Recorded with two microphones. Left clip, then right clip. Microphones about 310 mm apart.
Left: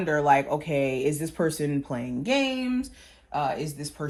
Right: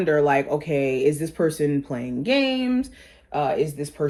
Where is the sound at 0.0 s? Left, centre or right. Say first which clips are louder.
Right 2 dB; centre.